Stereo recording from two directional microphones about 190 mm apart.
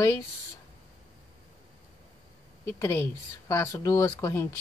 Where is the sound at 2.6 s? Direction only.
15° left (ahead or behind).